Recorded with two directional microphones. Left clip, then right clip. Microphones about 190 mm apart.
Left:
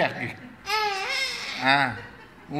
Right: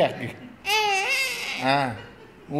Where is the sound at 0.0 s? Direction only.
30° right (ahead or behind).